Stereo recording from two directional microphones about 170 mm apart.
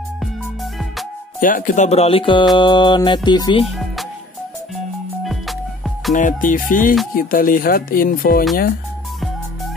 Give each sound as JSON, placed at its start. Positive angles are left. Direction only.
{"t": 1.4, "sound": "speech", "side_deg": 50}
{"t": 2.5, "sound": "music", "side_deg": 30}
{"t": 5.2, "sound": "music", "side_deg": 0}
{"t": 6.1, "sound": "music", "side_deg": 50}
{"t": 7.2, "sound": "speech", "side_deg": 55}